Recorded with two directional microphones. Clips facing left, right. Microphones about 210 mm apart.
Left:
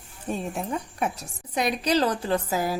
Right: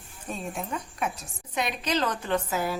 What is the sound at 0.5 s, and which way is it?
A woman's voice, 35° left (ahead or behind).